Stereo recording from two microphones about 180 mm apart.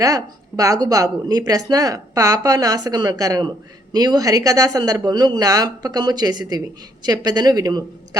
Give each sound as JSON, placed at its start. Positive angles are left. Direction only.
{"t": 0.0, "sound": "a woman's voice", "side_deg": -20}